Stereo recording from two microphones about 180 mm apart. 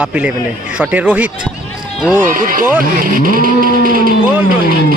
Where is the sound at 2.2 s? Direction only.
50° right (ahead or behind).